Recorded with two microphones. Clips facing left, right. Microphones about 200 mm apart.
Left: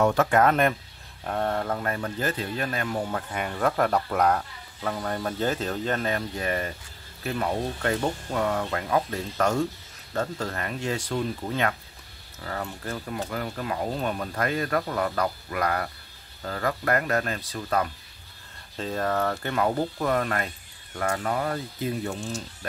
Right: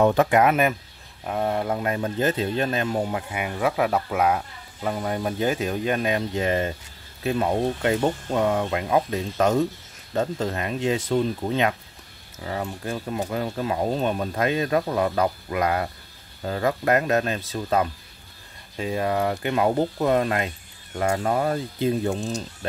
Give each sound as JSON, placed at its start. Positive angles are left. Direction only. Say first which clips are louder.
{"t": 0.0, "sound": "speech", "louder": "right 3 dB", "side_deg": -20}
{"t": 18.8, "sound": "speech", "louder": "right 3 dB", "side_deg": -10}